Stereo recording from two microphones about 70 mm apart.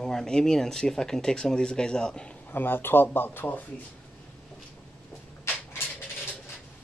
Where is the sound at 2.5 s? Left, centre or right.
Left.